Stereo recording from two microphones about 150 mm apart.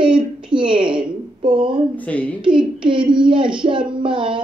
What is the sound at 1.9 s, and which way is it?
Speech, 10° left (ahead or behind).